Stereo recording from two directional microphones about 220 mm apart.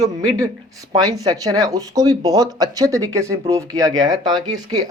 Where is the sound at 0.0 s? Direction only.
15° right (ahead or behind).